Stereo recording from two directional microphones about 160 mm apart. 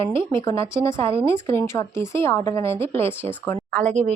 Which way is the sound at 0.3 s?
15° left (ahead or behind).